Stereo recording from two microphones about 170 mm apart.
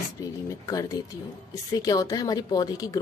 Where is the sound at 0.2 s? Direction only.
20° left (ahead or behind).